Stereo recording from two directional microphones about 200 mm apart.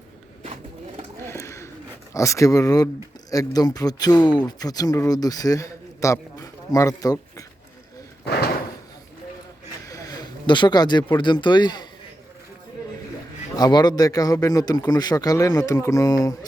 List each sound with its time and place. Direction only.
0.4 s a sound: 35° right (ahead or behind)
1.1 s a sound: 15° left (ahead or behind)
2.1 s speech: 15° left (ahead or behind)
8.2 s slam: 50° left (ahead or behind)
9.8 s speech: 15° left (ahead or behind)
13.6 s speech: 20° left (ahead or behind)